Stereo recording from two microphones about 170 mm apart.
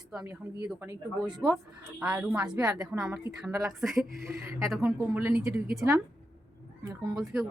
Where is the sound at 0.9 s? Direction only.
20° right (ahead or behind).